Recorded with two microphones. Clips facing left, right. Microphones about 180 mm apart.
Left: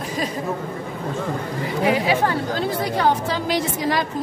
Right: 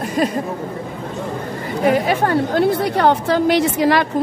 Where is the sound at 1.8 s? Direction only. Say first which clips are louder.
Right 4 dB; 50° right (ahead or behind).